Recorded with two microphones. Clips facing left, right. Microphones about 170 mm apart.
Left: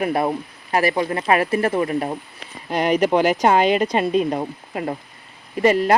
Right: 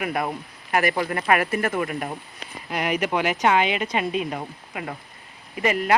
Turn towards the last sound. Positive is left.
turn(degrees=35)  # may be behind; listen again after turning